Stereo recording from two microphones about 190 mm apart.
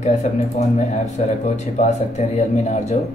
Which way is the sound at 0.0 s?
35° left (ahead or behind).